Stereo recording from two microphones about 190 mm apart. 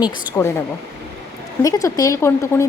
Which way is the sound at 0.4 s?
15° left (ahead or behind).